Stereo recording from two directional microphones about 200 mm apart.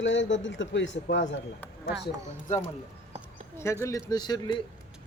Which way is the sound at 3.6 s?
10° left (ahead or behind).